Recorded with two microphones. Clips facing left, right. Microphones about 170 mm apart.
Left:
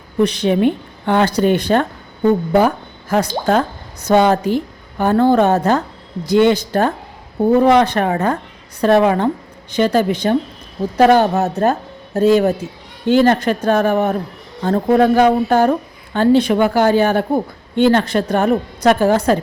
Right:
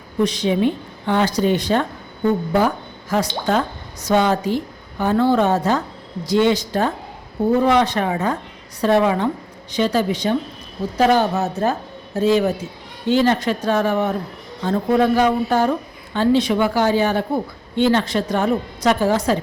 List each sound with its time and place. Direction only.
0.2 s speech: 65° left (ahead or behind)
2.6 s a sound: 60° left (ahead or behind)
4.1 s speech: 55° left (ahead or behind)